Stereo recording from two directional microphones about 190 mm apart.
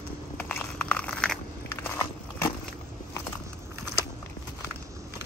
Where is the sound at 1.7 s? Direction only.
15° left (ahead or behind).